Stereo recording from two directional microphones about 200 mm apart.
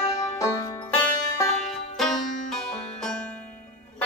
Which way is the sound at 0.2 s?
15° left (ahead or behind).